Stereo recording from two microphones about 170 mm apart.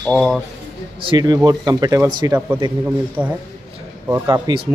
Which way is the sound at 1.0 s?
25° right (ahead or behind).